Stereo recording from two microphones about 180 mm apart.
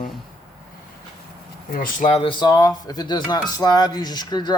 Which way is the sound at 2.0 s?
30° left (ahead or behind).